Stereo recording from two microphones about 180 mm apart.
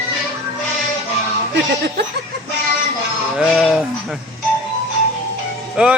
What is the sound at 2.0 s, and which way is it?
Speech, 70° right (ahead or behind).